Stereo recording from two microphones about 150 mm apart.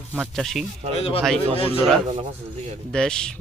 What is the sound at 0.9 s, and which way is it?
Speech, 40° left (ahead or behind).